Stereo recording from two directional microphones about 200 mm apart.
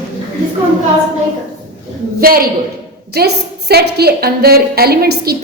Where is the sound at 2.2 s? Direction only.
50° right (ahead or behind).